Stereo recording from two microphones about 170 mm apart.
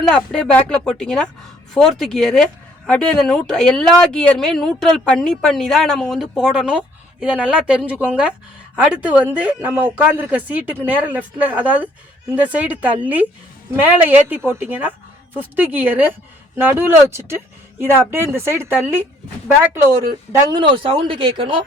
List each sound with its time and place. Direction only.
0.1 s a man's voice: 5° left (ahead or behind); by 18.8 s 15° right (ahead or behind)
20.3 s a woman's voice: 25° right (ahead or behind)